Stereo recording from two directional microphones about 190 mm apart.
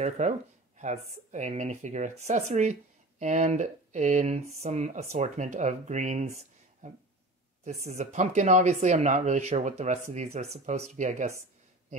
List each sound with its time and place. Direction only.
0.0 s speech: 40° right (ahead or behind)